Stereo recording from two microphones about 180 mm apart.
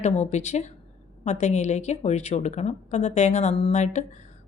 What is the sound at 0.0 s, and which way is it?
A woman's voice, 40° left (ahead or behind).